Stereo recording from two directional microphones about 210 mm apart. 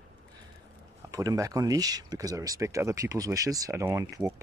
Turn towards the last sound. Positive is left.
turn(degrees=-15)  # may be behind; listen again after turning